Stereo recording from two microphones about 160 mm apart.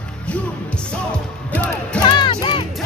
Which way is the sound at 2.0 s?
30° left (ahead or behind).